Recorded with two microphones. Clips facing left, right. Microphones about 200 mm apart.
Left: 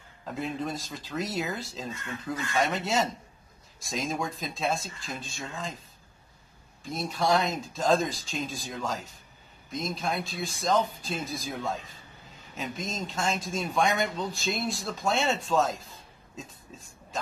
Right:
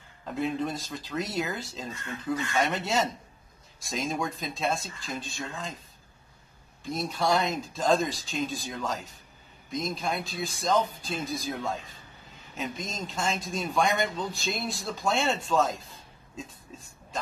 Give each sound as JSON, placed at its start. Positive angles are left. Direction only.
{"t": 0.2, "sound": "speech", "side_deg": 0}
{"t": 6.8, "sound": "speech", "side_deg": 0}